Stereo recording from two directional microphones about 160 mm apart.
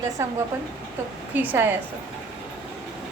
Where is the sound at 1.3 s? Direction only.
10° right (ahead or behind).